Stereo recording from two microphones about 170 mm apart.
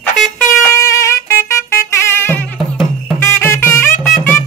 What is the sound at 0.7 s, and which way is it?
Music, 20° left (ahead or behind).